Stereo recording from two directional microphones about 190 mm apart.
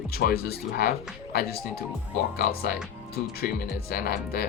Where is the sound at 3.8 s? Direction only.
55° left (ahead or behind).